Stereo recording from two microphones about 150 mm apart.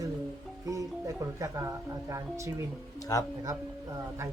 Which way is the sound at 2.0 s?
20° right (ahead or behind).